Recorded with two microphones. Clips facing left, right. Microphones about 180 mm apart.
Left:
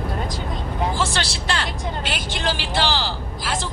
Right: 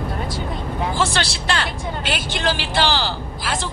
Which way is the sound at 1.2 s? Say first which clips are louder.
Right 2 dB; 65° right (ahead or behind).